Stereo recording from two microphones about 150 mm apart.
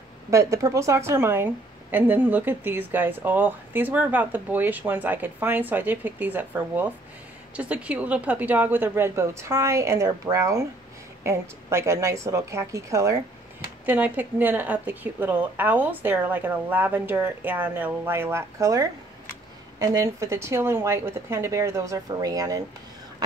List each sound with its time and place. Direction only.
0.3 s a woman's voice: 20° right (ahead or behind)